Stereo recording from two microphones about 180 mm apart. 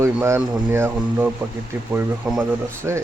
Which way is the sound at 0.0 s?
15° right (ahead or behind).